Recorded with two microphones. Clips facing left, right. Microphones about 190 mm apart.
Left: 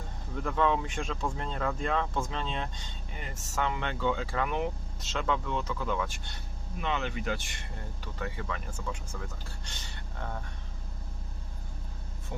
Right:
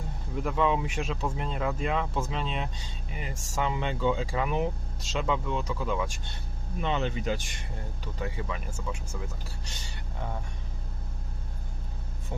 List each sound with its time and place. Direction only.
0.3 s speech: 15° right (ahead or behind)
6.8 s speech: 25° right (ahead or behind); by 9.7 s 10° right (ahead or behind)
12.3 s speech: 20° right (ahead or behind)